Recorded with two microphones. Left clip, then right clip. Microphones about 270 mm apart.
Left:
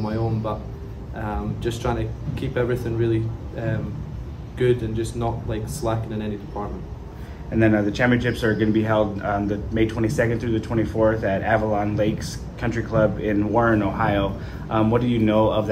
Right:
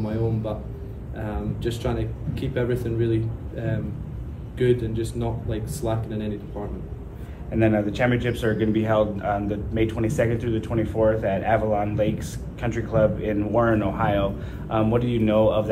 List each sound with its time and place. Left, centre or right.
0.0 s a man's voice: centre
7.5 s a man's voice: left